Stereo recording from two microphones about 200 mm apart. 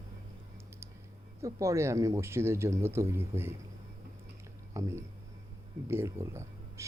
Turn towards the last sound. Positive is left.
turn(degrees=-15)  # may be behind; listen again after turning